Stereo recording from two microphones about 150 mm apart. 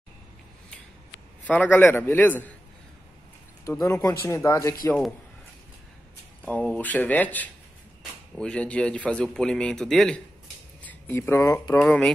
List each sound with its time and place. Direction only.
1.5 s a man's voice: 10° left (ahead or behind)
3.6 s speech: 20° left (ahead or behind)
6.7 s a man's voice: 10° left (ahead or behind)
11.8 s a man's voice: 10° left (ahead or behind)